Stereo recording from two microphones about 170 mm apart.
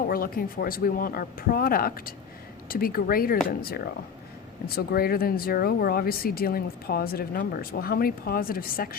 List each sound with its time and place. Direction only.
0.1 s speech: 60° left (ahead or behind)